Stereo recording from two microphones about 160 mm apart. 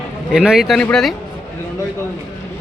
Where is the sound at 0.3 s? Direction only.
Centre (ahead or behind).